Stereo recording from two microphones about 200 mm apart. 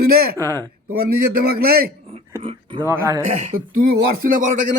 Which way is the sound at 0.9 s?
50° right (ahead or behind).